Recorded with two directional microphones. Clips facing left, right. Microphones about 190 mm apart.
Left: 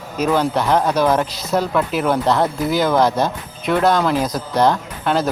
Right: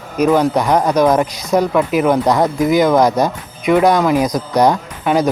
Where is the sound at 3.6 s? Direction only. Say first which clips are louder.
Right 4 dB; 10° right (ahead or behind).